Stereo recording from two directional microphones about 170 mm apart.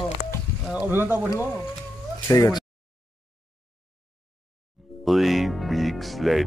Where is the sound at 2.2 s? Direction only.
20° left (ahead or behind).